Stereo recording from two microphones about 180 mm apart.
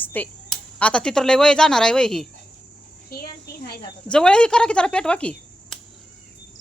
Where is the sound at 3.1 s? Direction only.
60° left (ahead or behind).